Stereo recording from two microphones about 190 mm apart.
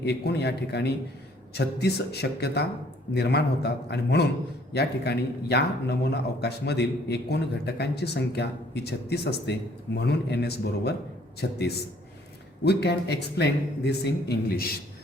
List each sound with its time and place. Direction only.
0.0 s a man's voice: 60° left (ahead or behind)